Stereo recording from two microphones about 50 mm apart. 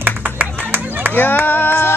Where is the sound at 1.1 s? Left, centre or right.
Left.